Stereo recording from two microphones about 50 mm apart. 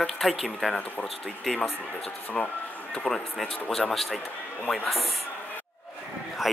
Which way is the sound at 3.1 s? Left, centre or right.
Left.